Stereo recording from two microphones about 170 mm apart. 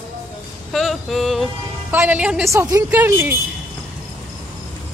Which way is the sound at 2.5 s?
20° right (ahead or behind).